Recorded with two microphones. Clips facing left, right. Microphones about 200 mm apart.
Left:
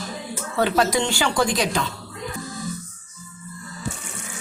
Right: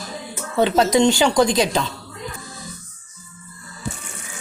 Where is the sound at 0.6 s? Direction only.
20° right (ahead or behind).